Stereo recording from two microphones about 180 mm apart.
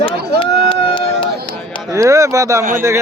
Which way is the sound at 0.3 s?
30° left (ahead or behind).